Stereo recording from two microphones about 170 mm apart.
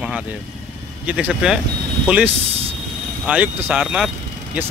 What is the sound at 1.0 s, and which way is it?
Speech, 5° right (ahead or behind).